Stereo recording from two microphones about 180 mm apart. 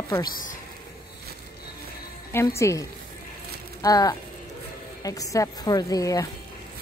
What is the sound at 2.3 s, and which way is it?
A woman's voice, 15° left (ahead or behind).